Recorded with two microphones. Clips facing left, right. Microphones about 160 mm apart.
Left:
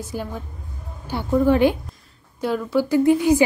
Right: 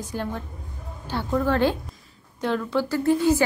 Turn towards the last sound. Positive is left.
turn(degrees=15)  # may be behind; listen again after turning